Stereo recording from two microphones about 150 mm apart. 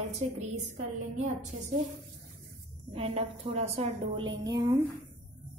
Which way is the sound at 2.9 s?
40° right (ahead or behind).